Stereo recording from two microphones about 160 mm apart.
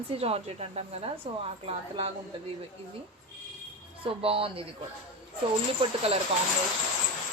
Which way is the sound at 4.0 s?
35° right (ahead or behind).